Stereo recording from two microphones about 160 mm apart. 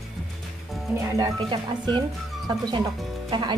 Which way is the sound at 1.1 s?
20° right (ahead or behind).